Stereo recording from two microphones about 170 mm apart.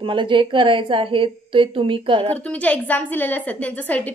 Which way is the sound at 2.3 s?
10° left (ahead or behind).